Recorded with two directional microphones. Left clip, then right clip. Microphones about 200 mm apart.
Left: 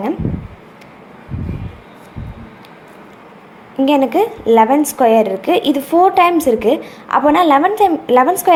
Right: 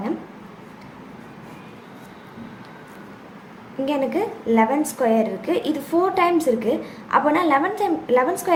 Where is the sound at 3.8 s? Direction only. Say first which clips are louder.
Left 9 dB; 35° left (ahead or behind).